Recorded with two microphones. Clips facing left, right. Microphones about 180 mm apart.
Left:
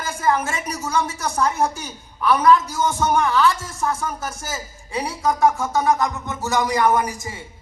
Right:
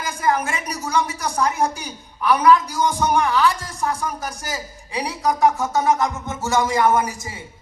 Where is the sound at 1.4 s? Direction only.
15° right (ahead or behind).